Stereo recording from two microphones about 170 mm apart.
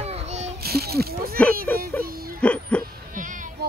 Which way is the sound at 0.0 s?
40° right (ahead or behind).